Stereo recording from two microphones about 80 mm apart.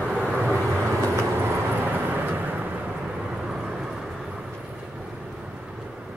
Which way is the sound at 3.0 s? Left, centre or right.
Centre.